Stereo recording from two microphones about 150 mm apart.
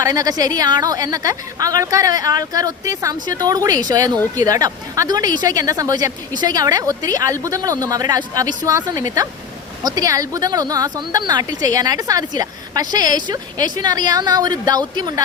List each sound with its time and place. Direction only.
0.0 s speech: 25° right (ahead or behind)